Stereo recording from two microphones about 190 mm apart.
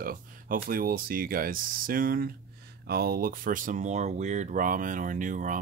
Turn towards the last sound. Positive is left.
turn(degrees=-45)  # may be behind; listen again after turning